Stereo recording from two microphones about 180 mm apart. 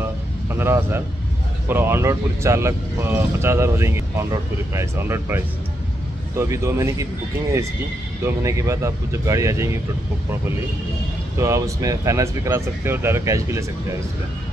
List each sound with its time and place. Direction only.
0.0 s a sound: 15° right (ahead or behind)
1.7 s speech: 10° right (ahead or behind)
8.2 s speech: 15° right (ahead or behind)
11.3 s speech: 15° right (ahead or behind)